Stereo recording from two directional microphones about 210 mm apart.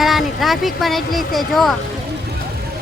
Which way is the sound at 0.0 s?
Centre (ahead or behind).